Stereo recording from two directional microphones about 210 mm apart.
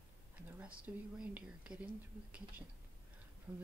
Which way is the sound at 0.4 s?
5° right (ahead or behind).